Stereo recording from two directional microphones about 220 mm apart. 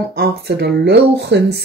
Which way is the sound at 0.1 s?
45° right (ahead or behind).